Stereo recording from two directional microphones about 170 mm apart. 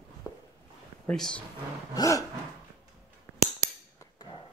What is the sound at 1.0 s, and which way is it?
Speech, 5° left (ahead or behind).